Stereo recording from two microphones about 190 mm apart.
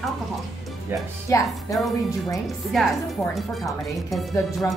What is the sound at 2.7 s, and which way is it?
Speech, centre (ahead or behind).